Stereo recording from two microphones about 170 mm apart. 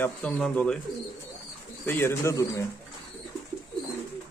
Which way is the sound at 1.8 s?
15° left (ahead or behind).